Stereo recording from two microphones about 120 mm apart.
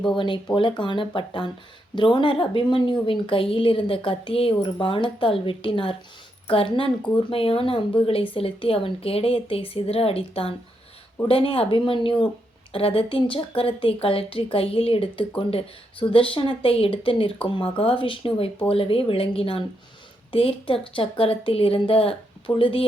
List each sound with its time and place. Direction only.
0.5 s a woman's voice: 45° left (ahead or behind)